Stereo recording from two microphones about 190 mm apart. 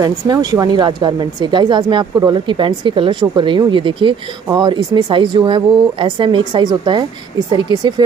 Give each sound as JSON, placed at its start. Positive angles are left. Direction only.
{"t": 0.0, "sound": "speech", "side_deg": -20}